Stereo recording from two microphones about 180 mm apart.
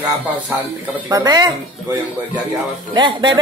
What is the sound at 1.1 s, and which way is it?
Speech, 20° right (ahead or behind).